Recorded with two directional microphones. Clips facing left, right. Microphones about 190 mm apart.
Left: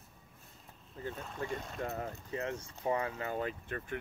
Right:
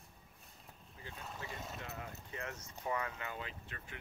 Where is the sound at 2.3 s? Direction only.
30° left (ahead or behind); by 3.9 s 50° left (ahead or behind).